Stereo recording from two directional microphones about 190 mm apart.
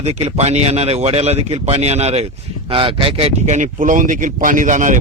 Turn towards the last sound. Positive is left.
turn(degrees=-40)  # may be behind; listen again after turning